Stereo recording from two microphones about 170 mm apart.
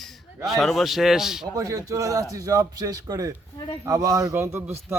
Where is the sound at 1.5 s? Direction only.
20° right (ahead or behind).